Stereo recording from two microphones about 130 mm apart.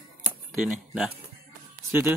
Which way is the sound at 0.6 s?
5° right (ahead or behind).